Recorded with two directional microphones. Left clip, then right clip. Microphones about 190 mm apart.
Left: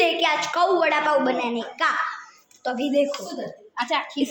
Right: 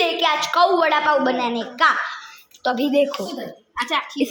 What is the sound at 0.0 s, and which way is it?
A woman's voice, centre (ahead or behind).